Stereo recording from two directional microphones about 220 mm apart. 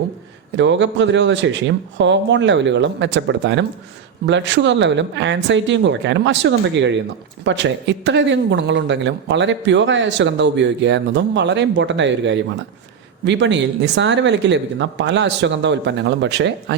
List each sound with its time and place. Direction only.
0.5 s speech: 55° right (ahead or behind)